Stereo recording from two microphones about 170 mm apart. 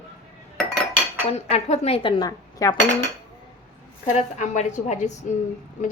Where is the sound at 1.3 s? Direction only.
40° left (ahead or behind); by 2.7 s 20° left (ahead or behind).